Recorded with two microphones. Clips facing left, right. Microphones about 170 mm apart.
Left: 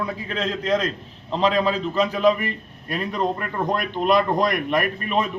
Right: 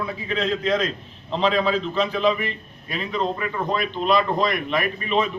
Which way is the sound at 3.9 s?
15° left (ahead or behind).